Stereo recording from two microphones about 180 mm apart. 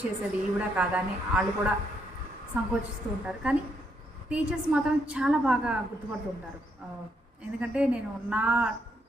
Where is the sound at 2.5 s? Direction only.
10° right (ahead or behind).